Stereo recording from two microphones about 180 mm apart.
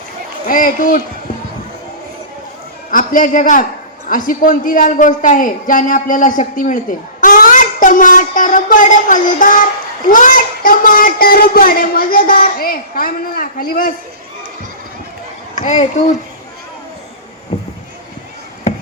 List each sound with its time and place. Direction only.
0.4 s speech: 50° left (ahead or behind)
2.9 s speech: 50° left (ahead or behind)
15.5 s speech: 40° left (ahead or behind)
17.5 s a sound: 35° left (ahead or behind)